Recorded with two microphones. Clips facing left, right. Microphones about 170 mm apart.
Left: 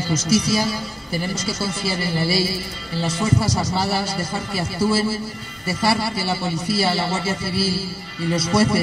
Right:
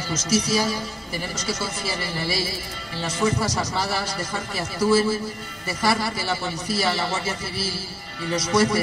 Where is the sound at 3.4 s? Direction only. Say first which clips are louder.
Left 3 dB; 10° left (ahead or behind).